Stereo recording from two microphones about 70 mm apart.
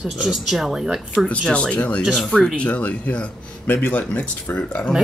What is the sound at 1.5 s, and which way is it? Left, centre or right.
A man's voice, centre.